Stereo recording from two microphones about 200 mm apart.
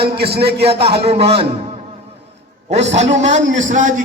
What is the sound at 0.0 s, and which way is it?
Speech, 55° right (ahead or behind).